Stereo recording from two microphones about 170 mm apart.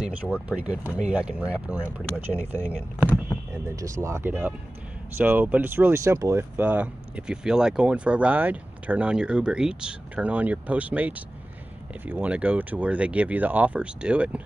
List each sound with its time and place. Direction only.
0.0 s speech: 10° right (ahead or behind)